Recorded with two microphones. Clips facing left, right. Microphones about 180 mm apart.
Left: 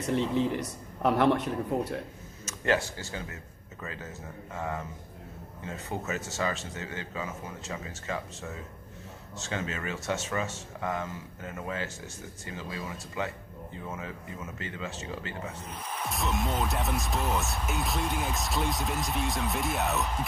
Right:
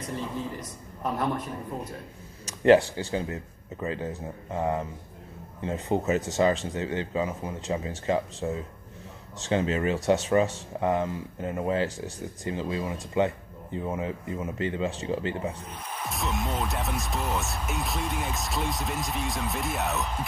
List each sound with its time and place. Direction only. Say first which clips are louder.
0.0 s a man's voice: left 6 dB; 75° left (ahead or behind)
2.4 s a sound: right 10 dB; 30° right (ahead or behind)
2.8 s speech: right 7 dB; 15° right (ahead or behind)
3.8 s speech: right 9 dB; 30° right (ahead or behind)
16.1 s speech: even; centre (ahead or behind)